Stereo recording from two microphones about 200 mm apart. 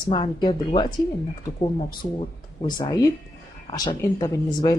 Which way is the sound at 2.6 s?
20° left (ahead or behind).